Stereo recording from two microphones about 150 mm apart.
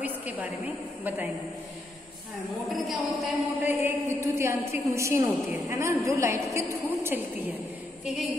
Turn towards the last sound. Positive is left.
turn(degrees=-15)  # may be behind; listen again after turning